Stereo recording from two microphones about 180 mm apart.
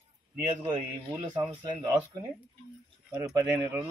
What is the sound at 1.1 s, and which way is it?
Speech, 25° right (ahead or behind).